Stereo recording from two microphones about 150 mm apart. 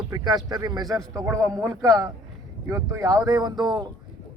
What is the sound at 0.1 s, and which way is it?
A man's voice, 25° right (ahead or behind).